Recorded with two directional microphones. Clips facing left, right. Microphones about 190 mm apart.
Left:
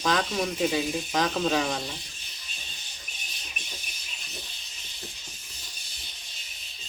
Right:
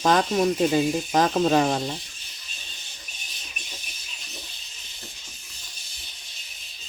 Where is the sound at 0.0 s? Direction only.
45° right (ahead or behind).